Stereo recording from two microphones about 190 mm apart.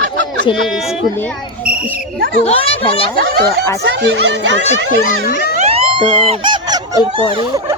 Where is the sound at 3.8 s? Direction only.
70° right (ahead or behind).